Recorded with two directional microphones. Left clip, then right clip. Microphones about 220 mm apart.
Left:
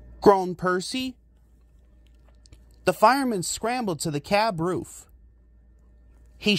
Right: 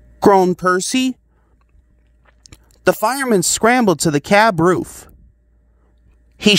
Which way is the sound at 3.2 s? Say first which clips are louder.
Right 13 dB; 40° right (ahead or behind).